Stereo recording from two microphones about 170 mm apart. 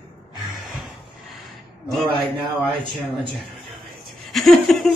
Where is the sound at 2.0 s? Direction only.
30° right (ahead or behind).